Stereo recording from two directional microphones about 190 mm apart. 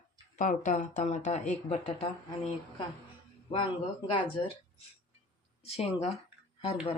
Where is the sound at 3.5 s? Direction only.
25° left (ahead or behind).